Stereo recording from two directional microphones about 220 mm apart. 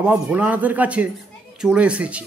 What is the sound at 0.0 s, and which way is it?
A man's voice, 5° right (ahead or behind).